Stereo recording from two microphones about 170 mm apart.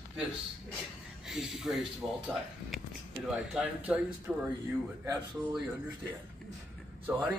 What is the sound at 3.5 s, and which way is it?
Speech, 10° right (ahead or behind).